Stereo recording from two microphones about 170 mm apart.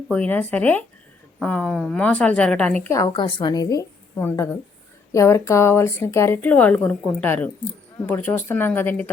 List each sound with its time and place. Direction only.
0.1 s speech: 10° left (ahead or behind)
3.0 s a woman's voice: 25° left (ahead or behind)